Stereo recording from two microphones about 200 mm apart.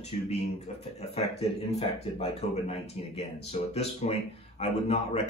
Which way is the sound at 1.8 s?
30° left (ahead or behind).